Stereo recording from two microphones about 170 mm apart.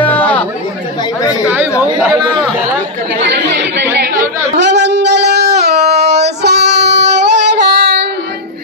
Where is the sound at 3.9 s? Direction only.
75° right (ahead or behind).